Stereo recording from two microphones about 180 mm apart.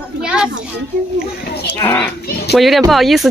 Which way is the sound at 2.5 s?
Centre (ahead or behind).